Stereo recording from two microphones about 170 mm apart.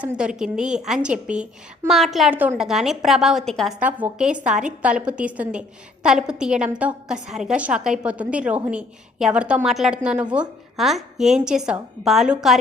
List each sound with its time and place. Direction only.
0.0 s a woman's voice: 5° right (ahead or behind)
3.8 s a woman's voice: 10° right (ahead or behind)